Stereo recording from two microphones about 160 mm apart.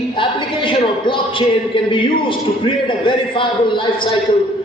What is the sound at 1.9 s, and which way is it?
A man's voice, 30° left (ahead or behind).